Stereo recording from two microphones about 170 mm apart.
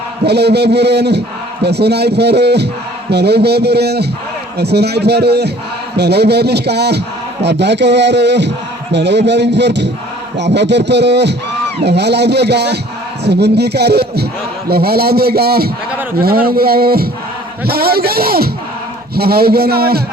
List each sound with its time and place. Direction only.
0.3 s speech: 75° right (ahead or behind)
7.4 s speech: 90° right
11.9 s a man's voice: 80° right